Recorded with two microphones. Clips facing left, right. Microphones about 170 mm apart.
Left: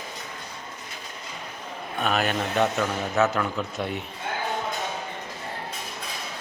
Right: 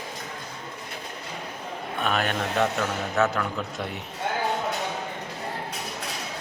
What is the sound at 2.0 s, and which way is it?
A man's voice, 5° left (ahead or behind).